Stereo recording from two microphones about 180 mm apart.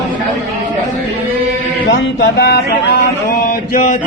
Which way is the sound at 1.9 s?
80° left.